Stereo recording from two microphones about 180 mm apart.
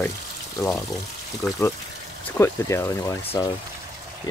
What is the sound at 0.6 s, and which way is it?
Speech, 15° left (ahead or behind).